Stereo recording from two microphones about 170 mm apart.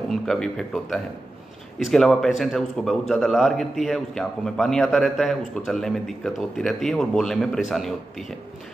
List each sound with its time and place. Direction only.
0.1 s a man's voice: centre (ahead or behind)